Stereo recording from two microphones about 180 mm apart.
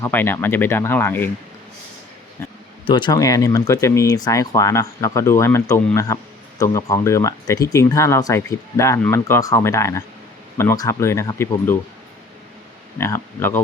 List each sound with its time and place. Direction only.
0.0 s speech: 10° left (ahead or behind)
2.8 s speech: 25° left (ahead or behind)
13.0 s speech: 15° left (ahead or behind)